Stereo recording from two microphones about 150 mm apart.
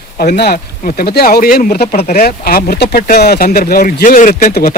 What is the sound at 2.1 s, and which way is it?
Speech, 90° left.